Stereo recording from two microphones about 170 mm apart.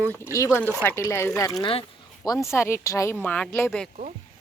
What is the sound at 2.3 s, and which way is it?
Speech, 15° left (ahead or behind).